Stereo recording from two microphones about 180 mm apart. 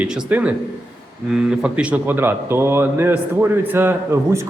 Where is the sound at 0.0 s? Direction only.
5° right (ahead or behind).